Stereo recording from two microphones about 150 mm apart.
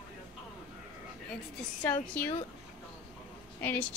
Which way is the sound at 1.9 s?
10° left (ahead or behind).